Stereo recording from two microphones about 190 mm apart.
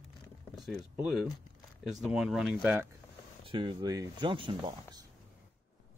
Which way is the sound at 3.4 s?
25° right (ahead or behind).